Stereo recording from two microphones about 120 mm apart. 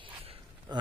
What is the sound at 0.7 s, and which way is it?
Speech, 35° right (ahead or behind).